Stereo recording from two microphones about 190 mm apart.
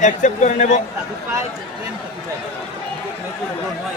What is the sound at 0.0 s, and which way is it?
Speech, 40° left (ahead or behind).